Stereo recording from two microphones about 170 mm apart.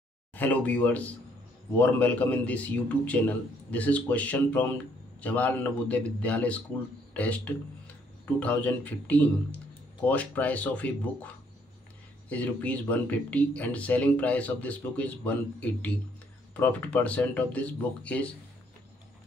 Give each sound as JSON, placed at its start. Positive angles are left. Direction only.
{"t": 0.3, "sound": "speech", "side_deg": 10}
{"t": 12.3, "sound": "speech", "side_deg": 10}